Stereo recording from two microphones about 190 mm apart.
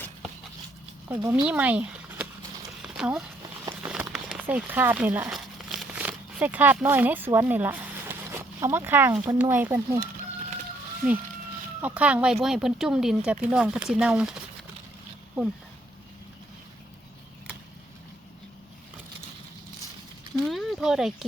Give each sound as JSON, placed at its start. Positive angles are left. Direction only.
{"t": 1.0, "sound": "speech", "side_deg": -15}
{"t": 2.8, "sound": "a sound", "side_deg": -5}
{"t": 3.9, "sound": "crumpling", "side_deg": -5}
{"t": 9.1, "sound": "speech", "side_deg": -20}
{"t": 9.4, "sound": "speech", "side_deg": -10}
{"t": 11.8, "sound": "speech", "side_deg": -5}
{"t": 20.5, "sound": "a sound", "side_deg": 0}